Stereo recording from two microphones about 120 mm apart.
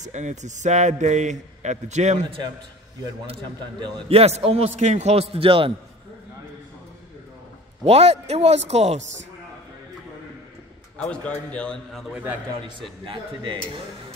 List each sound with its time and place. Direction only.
0.0 s a man's voice: 85° right
4.1 s a man's voice: 55° right (ahead or behind)
7.8 s a man's voice: 55° right (ahead or behind)
11.0 s a man's voice: 10° left (ahead or behind)
13.0 s speech: 45° right (ahead or behind)